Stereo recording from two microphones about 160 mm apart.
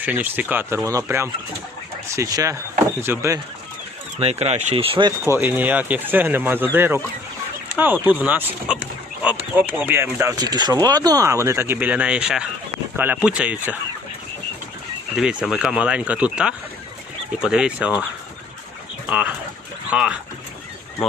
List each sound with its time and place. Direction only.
0.0 s speech: 10° right (ahead or behind)
4.2 s speech: 40° right (ahead or behind)
5.2 s speech: 15° right (ahead or behind)
15.1 s speech: 5° right (ahead or behind)
19.0 s speech: 10° right (ahead or behind)